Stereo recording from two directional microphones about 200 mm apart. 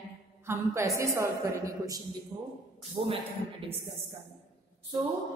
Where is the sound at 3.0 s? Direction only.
30° right (ahead or behind).